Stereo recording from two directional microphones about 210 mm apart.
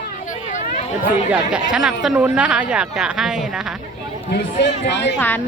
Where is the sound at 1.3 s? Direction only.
5° right (ahead or behind).